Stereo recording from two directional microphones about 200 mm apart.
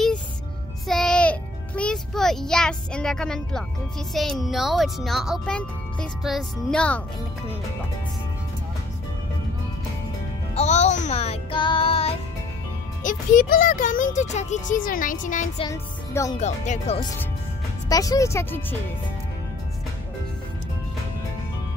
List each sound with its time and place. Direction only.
0.8 s music: centre (ahead or behind)
4.1 s speech: centre (ahead or behind)
10.5 s speech: 35° left (ahead or behind)
13.0 s speech: 40° left (ahead or behind)
15.6 s speech: 15° left (ahead or behind)
16.3 s speech: 35° left (ahead or behind)
17.8 s speech: 15° left (ahead or behind)